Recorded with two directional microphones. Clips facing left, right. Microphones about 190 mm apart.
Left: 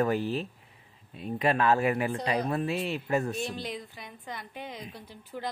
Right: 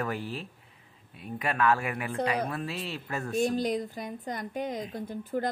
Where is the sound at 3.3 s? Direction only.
45° right (ahead or behind).